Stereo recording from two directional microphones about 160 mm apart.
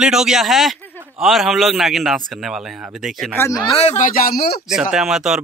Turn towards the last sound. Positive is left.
turn(degrees=-5)  # may be behind; listen again after turning